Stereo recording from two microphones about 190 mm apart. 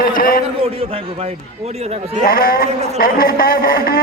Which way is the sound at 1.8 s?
35° right (ahead or behind).